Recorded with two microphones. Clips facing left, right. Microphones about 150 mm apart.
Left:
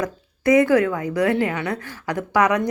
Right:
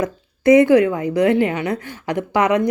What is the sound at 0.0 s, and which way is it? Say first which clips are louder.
A woman's voice: right 4 dB; 20° right (ahead or behind).